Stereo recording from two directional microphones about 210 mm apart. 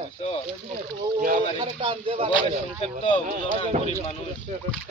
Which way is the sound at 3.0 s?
25° left (ahead or behind).